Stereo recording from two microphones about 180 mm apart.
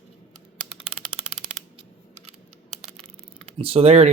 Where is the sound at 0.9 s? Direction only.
30° right (ahead or behind).